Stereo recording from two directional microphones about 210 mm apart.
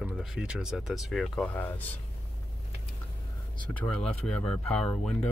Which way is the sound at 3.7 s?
5° left (ahead or behind).